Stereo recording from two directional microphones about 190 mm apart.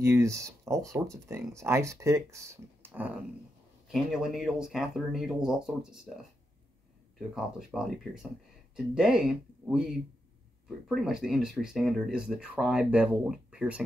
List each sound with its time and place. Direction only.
0.0 s speech: 15° right (ahead or behind)
7.3 s speech: centre (ahead or behind)
11.0 s speech: 5° right (ahead or behind)